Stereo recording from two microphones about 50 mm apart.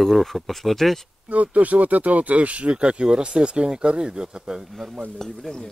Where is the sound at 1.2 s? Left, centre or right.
Right; by 4.7 s centre.